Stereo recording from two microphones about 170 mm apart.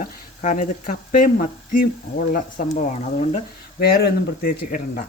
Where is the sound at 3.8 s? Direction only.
65° left (ahead or behind).